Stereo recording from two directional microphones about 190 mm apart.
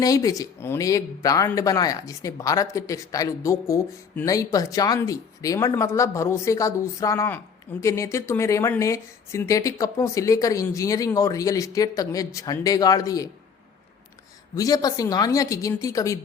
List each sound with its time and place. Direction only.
0.0 s speech: 20° left (ahead or behind)
14.5 s speech: 20° left (ahead or behind)